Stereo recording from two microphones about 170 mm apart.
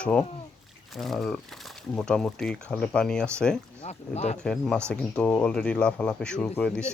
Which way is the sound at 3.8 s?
40° left (ahead or behind).